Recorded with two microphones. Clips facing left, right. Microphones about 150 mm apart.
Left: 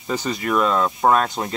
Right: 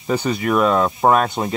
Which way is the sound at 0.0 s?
5° right (ahead or behind).